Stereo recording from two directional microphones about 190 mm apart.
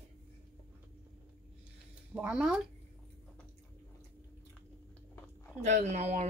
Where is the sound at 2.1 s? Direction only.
5° right (ahead or behind).